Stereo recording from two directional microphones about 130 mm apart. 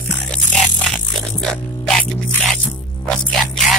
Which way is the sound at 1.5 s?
5° left (ahead or behind).